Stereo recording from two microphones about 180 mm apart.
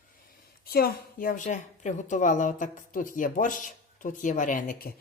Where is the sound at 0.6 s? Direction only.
55° left (ahead or behind).